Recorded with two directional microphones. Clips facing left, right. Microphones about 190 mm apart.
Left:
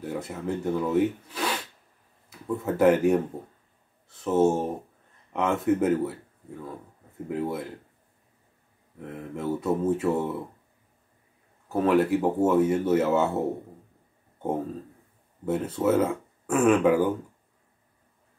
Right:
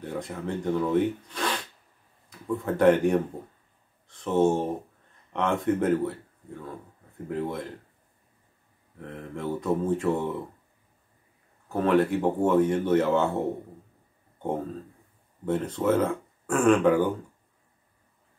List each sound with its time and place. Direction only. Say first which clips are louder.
0.0 s speech: left 1 dB; 5° left (ahead or behind)
9.0 s speech: left 2 dB; 5° left (ahead or behind)
11.7 s speech: left 1 dB; 5° left (ahead or behind)
15.4 s speech: left 1 dB; 5° left (ahead or behind)